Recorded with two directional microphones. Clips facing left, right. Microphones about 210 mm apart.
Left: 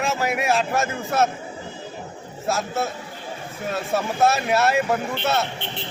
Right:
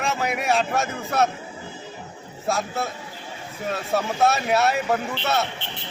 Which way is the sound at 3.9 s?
Centre (ahead or behind).